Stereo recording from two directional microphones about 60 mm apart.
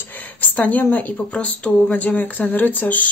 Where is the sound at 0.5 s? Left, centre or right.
Left.